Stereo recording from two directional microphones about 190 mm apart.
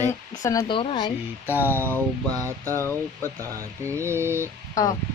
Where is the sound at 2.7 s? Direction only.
10° left (ahead or behind).